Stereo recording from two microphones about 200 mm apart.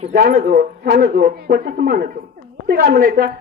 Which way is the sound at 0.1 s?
45° right (ahead or behind).